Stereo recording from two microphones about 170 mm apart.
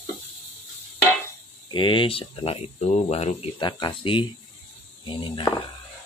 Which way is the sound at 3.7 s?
25° left (ahead or behind).